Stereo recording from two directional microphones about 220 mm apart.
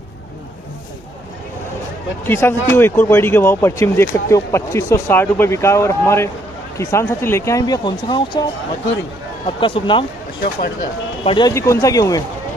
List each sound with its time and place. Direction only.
2.2 s speech: 10° left (ahead or behind)
9.6 s speech: 20° left (ahead or behind)
11.2 s speech: 20° left (ahead or behind)